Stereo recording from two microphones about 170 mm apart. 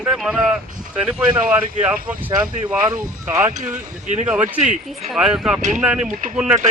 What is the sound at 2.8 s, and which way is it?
Speech, 20° right (ahead or behind).